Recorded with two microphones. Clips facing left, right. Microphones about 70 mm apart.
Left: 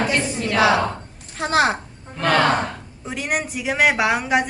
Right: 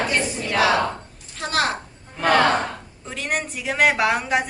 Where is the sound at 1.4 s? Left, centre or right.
Left.